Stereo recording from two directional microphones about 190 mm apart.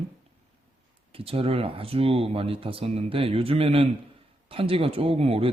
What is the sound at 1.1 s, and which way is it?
Speech, 30° right (ahead or behind).